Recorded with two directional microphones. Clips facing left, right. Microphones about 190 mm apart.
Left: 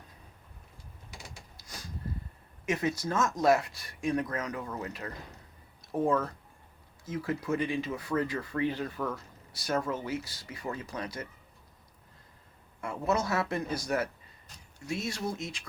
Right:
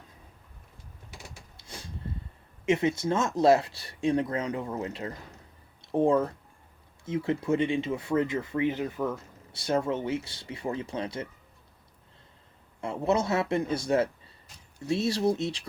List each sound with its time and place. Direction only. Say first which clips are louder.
1.5 s a sound: right 2 dB; 30° right (ahead or behind)
2.6 s speech: right 5 dB; 25° right (ahead or behind)
12.8 s speech: right 4 dB; 25° right (ahead or behind)